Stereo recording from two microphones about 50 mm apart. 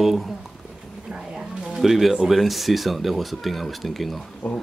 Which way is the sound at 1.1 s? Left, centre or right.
Centre.